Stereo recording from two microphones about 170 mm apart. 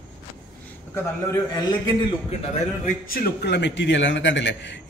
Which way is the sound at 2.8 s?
60° left (ahead or behind).